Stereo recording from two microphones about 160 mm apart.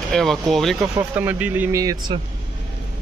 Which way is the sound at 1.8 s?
20° right (ahead or behind).